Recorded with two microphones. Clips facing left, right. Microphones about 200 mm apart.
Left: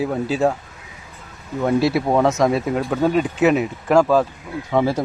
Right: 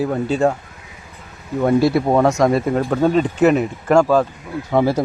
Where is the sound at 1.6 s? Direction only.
Centre (ahead or behind).